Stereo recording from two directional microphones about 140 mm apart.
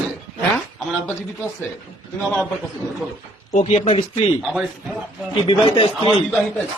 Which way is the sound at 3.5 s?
60° left (ahead or behind).